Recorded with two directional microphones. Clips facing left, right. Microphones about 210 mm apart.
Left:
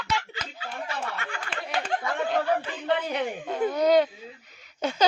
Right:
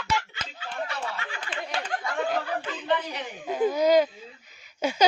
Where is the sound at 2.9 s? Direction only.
55° left (ahead or behind).